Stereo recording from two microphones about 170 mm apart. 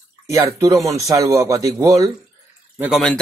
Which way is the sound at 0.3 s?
15° right (ahead or behind).